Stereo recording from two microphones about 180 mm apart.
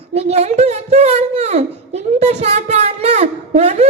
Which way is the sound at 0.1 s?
35° right (ahead or behind).